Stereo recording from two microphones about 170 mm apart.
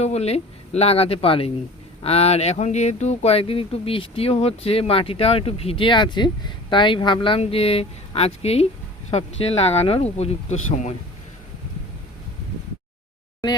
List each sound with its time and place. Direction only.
0.0 s speech: 40° left (ahead or behind)